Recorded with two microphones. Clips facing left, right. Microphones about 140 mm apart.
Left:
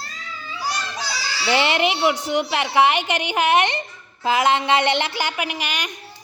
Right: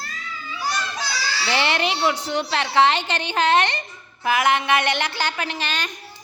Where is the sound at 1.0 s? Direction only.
15° left (ahead or behind).